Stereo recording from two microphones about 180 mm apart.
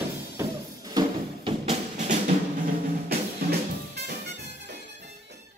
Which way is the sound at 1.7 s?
40° right (ahead or behind).